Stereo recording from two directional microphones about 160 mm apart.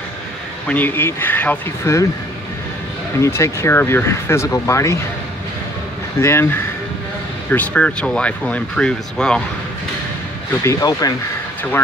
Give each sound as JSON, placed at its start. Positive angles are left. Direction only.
{"t": 0.7, "sound": "speech", "side_deg": 10}
{"t": 3.2, "sound": "speech", "side_deg": 20}
{"t": 6.1, "sound": "speech", "side_deg": 15}
{"t": 10.6, "sound": "speech", "side_deg": 20}